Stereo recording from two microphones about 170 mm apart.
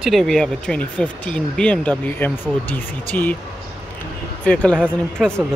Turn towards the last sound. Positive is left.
turn(degrees=-5)  # may be behind; listen again after turning